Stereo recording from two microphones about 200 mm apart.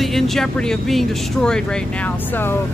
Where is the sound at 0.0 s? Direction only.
Centre (ahead or behind).